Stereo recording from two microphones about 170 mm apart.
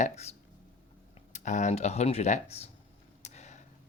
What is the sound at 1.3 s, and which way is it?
Speech, 45° left (ahead or behind).